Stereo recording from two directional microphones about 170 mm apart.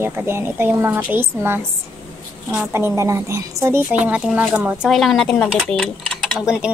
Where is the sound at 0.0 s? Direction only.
15° right (ahead or behind).